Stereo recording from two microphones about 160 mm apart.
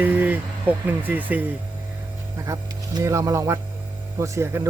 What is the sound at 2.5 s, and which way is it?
Speech, 20° right (ahead or behind).